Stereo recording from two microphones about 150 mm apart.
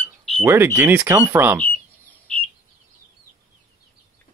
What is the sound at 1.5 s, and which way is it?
Bird, 10° left (ahead or behind).